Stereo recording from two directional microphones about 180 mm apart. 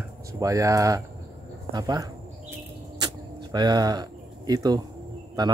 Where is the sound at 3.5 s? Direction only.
25° right (ahead or behind).